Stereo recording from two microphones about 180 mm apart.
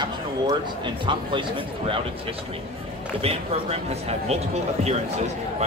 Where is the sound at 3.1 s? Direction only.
30° right (ahead or behind).